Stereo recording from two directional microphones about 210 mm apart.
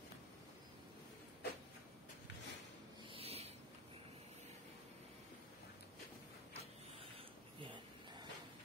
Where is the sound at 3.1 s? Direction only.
30° right (ahead or behind).